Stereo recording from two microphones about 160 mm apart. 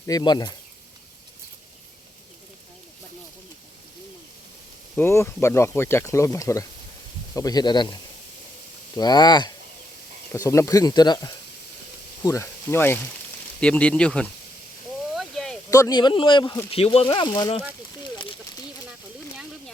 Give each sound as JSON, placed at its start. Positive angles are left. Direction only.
{"t": 0.0, "sound": "speech", "side_deg": 25}
{"t": 4.9, "sound": "speech", "side_deg": 15}
{"t": 9.0, "sound": "speech", "side_deg": 25}
{"t": 15.1, "sound": "a sound", "side_deg": 0}
{"t": 15.7, "sound": "speech", "side_deg": 25}